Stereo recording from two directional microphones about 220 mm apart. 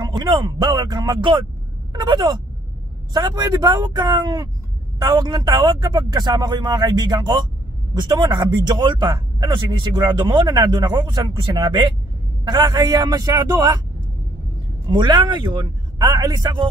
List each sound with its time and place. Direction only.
0.0 s speech: 20° right (ahead or behind)
14.9 s speech: 20° right (ahead or behind)